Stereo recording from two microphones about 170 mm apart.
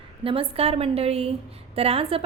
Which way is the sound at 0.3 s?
35° right (ahead or behind).